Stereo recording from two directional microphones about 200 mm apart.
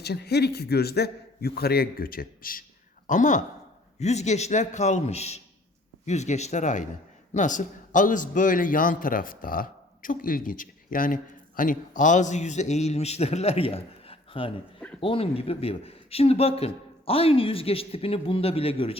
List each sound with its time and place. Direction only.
0.0 s a man's voice: 55° left (ahead or behind); by 18.9 s 30° left (ahead or behind)